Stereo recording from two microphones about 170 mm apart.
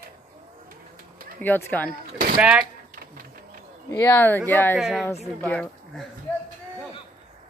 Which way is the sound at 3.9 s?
15° left (ahead or behind).